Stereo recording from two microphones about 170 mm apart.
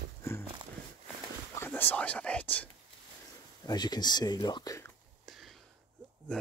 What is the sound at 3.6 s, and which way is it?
Speech, 25° left (ahead or behind).